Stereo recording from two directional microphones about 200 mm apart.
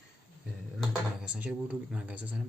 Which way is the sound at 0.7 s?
5° right (ahead or behind).